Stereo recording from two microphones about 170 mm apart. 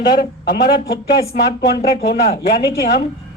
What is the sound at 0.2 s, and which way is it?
Speech, 70° left (ahead or behind).